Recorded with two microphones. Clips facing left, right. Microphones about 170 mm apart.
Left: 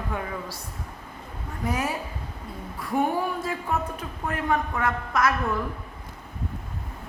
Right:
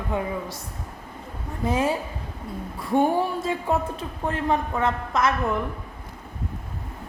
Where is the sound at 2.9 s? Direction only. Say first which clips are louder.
Right 4 dB; 30° right (ahead or behind).